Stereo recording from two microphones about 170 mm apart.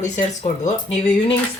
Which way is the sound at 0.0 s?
45° left (ahead or behind).